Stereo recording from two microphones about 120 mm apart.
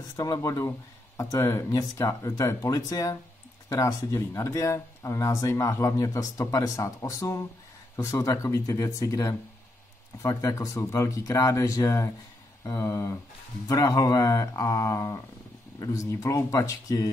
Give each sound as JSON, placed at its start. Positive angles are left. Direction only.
{"t": 0.1, "sound": "speech", "side_deg": 30}